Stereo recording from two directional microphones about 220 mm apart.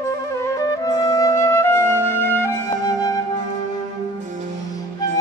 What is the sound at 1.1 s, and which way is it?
Flute, 15° left (ahead or behind).